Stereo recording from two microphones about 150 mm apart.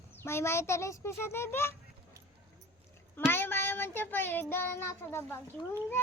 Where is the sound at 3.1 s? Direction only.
15° left (ahead or behind).